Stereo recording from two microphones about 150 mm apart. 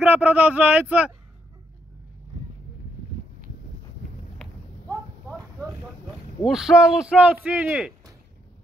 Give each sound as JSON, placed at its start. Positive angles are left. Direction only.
{"t": 0.1, "sound": "speech", "side_deg": -10}
{"t": 4.4, "sound": "a sound", "side_deg": 5}
{"t": 6.4, "sound": "speech", "side_deg": -5}